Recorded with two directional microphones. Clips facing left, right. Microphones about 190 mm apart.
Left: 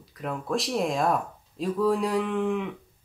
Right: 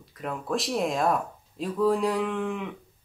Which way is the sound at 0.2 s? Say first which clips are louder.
Left 1 dB; centre (ahead or behind).